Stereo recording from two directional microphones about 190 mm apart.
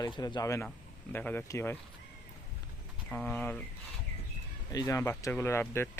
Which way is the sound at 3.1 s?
10° left (ahead or behind).